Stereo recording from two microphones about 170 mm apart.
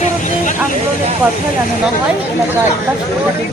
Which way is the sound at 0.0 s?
45° left (ahead or behind).